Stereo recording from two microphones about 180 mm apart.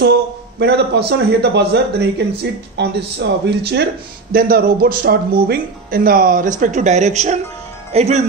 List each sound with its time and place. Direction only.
0.0 s a man's voice: 70° right (ahead or behind)
4.3 s speech: 55° right (ahead or behind); by 8.3 s 35° right (ahead or behind)